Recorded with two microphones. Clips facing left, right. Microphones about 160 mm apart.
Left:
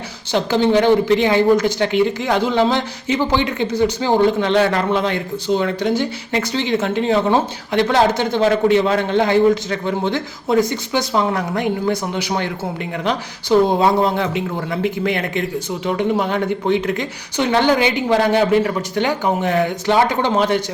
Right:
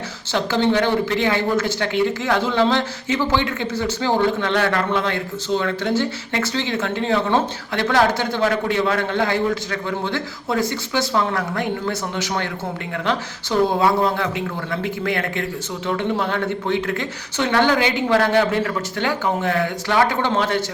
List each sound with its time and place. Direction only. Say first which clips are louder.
0.3 s speech: left 3 dB; 15° left (ahead or behind)